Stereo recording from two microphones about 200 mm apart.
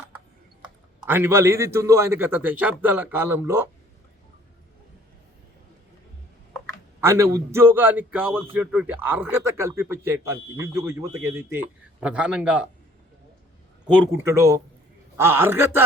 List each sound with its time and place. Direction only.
1.0 s a man's voice: 10° right (ahead or behind)
7.0 s a man's voice: 15° right (ahead or behind)
13.8 s a man's voice: 10° right (ahead or behind)